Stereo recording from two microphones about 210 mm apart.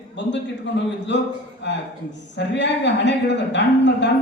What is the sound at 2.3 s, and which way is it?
Speech, 55° left (ahead or behind).